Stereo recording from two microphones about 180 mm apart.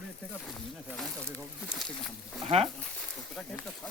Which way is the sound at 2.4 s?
35° right (ahead or behind).